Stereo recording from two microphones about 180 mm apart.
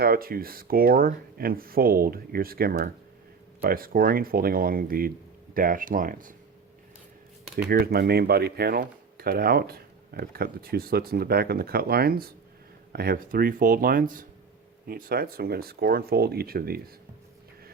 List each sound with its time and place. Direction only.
0.0 s speech: 55° right (ahead or behind)
7.7 s speech: 55° right (ahead or behind)